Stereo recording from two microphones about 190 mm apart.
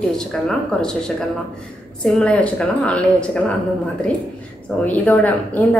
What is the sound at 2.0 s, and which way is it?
A woman's voice, 5° left (ahead or behind).